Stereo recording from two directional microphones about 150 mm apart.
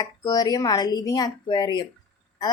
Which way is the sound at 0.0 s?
25° left (ahead or behind).